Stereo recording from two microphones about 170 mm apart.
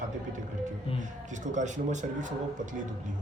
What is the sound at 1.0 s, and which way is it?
Speech, 45° right (ahead or behind).